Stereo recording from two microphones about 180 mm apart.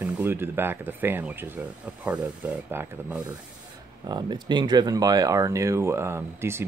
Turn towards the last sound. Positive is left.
turn(degrees=-15)  # may be behind; listen again after turning